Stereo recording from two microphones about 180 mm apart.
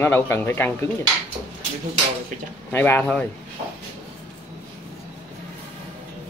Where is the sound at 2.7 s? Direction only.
10° left (ahead or behind).